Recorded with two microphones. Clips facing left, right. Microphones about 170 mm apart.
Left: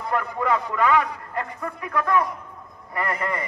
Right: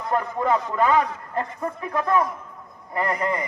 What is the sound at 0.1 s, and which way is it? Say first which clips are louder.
A man's voice: right 2 dB; 30° right (ahead or behind).